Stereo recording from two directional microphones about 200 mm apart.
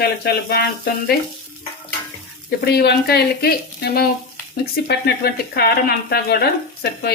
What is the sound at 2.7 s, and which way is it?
A woman's voice, 55° left (ahead or behind).